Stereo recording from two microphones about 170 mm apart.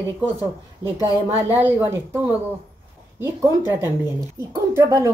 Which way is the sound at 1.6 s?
15° right (ahead or behind).